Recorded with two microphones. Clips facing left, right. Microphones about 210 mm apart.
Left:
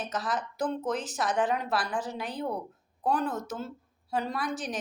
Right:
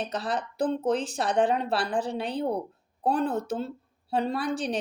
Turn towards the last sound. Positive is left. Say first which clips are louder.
# right 5 dB
turn(degrees=-30)  # may be behind; listen again after turning